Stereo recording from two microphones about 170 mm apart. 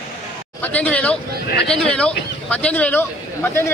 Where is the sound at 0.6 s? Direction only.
10° left (ahead or behind).